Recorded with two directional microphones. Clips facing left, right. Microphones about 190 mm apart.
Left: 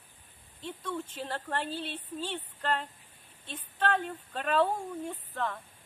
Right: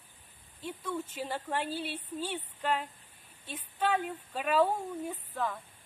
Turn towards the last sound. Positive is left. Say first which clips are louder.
# even
turn(degrees=-5)  # may be behind; listen again after turning